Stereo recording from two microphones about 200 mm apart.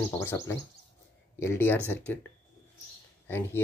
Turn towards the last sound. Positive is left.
turn(degrees=10)  # may be behind; listen again after turning